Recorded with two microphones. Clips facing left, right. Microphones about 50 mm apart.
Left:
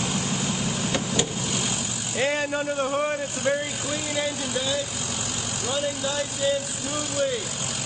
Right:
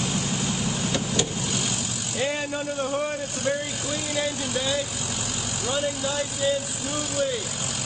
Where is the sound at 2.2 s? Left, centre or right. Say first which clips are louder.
Left 3 dB; left.